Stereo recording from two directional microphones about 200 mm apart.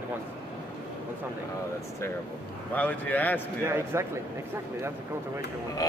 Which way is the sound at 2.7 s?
10° left (ahead or behind).